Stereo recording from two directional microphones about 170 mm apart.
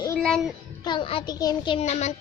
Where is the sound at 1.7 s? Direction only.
40° left (ahead or behind).